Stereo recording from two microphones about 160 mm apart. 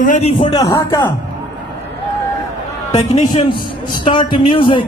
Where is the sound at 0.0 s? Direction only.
45° left (ahead or behind).